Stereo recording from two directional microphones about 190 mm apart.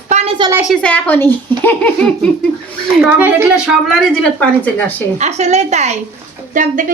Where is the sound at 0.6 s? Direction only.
5° right (ahead or behind).